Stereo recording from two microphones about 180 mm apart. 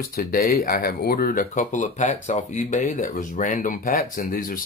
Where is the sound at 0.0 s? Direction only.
55° left (ahead or behind).